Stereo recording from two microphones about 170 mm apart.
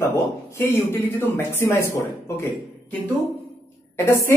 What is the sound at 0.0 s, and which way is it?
A man's voice, 15° left (ahead or behind).